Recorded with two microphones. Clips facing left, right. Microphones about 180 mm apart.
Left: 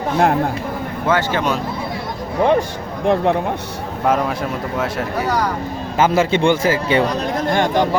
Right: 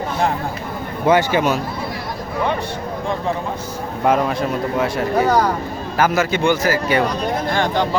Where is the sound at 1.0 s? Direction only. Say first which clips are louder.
Right 3 dB; 15° right (ahead or behind).